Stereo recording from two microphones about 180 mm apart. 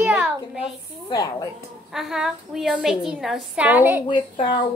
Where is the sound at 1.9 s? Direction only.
5° right (ahead or behind).